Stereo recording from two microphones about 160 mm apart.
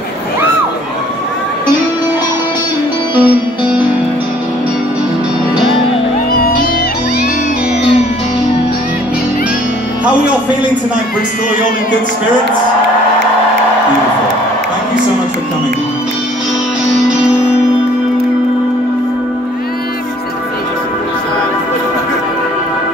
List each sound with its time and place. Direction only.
3.2 s music: 10° right (ahead or behind)
6.3 s music: 65° left (ahead or behind)